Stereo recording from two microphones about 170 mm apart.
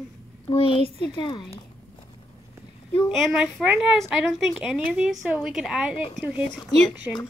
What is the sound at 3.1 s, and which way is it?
A woman's voice, centre (ahead or behind).